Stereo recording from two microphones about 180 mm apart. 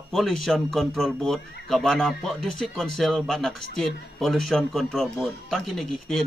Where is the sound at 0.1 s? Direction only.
Centre (ahead or behind).